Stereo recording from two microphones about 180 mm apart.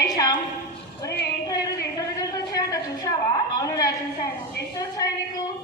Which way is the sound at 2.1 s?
20° left (ahead or behind).